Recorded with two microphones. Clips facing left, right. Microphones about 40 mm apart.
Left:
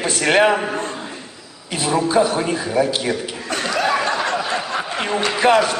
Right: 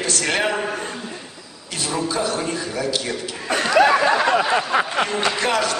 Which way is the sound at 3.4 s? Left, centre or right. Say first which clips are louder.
Right 5 dB; centre.